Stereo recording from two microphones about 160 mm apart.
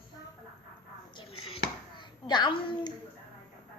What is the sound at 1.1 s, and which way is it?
Chopping, 35° left (ahead or behind).